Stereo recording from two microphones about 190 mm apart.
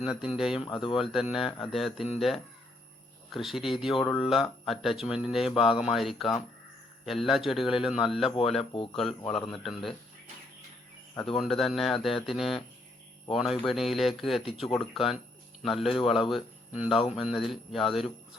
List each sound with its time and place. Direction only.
0.0 s speech: centre (ahead or behind)
0.7 s speech: 25° left (ahead or behind)
1.1 s speech: centre (ahead or behind)
8.3 s speech: 30° left (ahead or behind)
8.9 s speech: centre (ahead or behind)
11.1 s speech: 5° left (ahead or behind)